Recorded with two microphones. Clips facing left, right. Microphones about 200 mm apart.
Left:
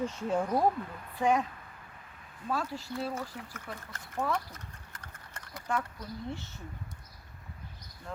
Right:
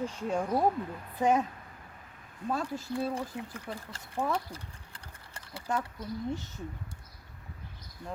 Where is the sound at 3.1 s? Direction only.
30° right (ahead or behind).